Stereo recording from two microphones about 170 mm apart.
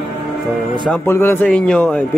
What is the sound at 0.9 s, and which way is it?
Speech, 15° left (ahead or behind).